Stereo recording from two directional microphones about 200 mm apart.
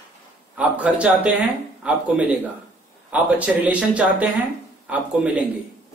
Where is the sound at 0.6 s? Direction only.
5° right (ahead or behind).